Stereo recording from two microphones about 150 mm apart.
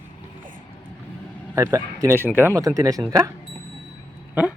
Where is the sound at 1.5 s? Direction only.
20° right (ahead or behind).